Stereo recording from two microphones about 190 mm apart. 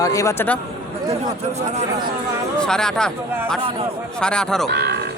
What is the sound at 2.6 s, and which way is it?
Speech, 5° left (ahead or behind).